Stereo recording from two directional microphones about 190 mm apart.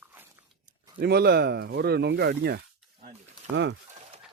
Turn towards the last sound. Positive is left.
turn(degrees=-70)  # may be behind; listen again after turning